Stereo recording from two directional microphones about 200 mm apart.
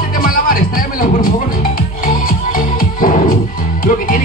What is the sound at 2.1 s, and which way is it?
Music, 45° left (ahead or behind).